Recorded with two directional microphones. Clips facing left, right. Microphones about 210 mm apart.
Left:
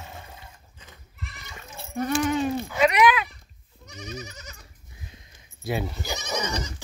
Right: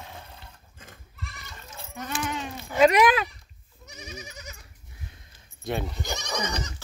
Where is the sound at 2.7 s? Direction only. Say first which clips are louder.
Right 3 dB; 35° right (ahead or behind).